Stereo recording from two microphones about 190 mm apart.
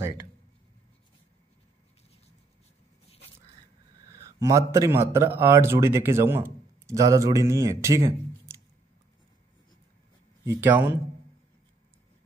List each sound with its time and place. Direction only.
4.1 s a man's voice: 15° right (ahead or behind)
10.6 s a man's voice: 10° right (ahead or behind)